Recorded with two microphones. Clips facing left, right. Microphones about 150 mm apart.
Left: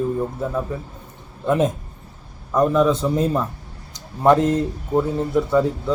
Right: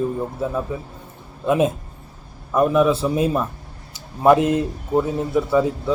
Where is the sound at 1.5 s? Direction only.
10° right (ahead or behind).